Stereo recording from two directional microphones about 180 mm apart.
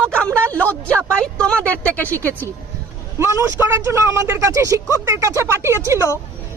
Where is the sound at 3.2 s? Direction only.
15° right (ahead or behind).